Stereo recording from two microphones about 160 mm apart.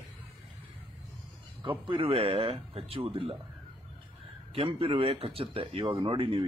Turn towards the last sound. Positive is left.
turn(degrees=-30)  # may be behind; listen again after turning